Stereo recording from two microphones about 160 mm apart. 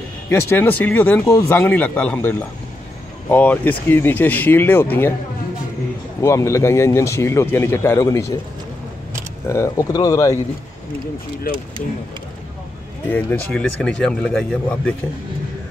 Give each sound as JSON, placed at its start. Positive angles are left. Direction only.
{"t": 0.3, "sound": "speech", "side_deg": 10}
{"t": 6.2, "sound": "speech", "side_deg": 20}
{"t": 9.5, "sound": "speech", "side_deg": 20}
{"t": 13.1, "sound": "speech", "side_deg": 10}